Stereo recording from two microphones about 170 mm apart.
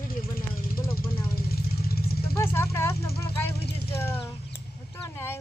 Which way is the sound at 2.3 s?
15° left (ahead or behind).